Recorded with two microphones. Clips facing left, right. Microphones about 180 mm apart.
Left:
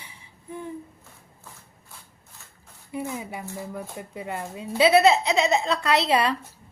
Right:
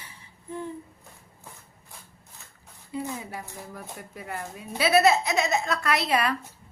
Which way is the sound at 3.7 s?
20° left (ahead or behind).